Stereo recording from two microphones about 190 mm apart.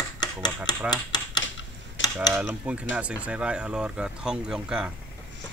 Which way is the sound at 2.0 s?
85° left.